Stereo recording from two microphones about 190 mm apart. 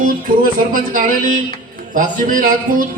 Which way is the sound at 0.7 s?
45° right (ahead or behind).